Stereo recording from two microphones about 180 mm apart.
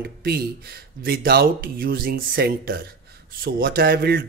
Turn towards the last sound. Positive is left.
turn(degrees=-60)  # may be behind; listen again after turning